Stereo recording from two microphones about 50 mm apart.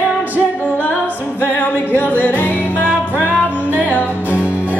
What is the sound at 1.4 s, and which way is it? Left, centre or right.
Music, left.